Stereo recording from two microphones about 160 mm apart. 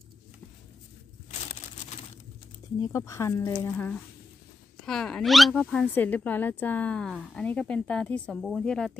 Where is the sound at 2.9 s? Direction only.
20° left (ahead or behind).